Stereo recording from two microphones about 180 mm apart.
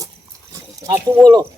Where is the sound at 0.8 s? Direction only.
20° right (ahead or behind).